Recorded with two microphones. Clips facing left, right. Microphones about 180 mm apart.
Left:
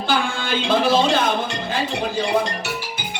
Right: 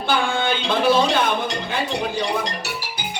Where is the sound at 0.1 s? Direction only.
55° right (ahead or behind).